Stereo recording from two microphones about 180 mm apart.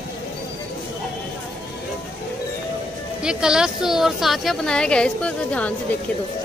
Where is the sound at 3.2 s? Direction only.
5° right (ahead or behind).